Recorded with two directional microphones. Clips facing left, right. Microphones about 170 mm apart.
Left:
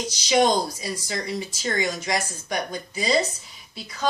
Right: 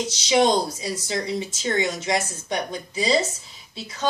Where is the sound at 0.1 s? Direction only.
25° right (ahead or behind).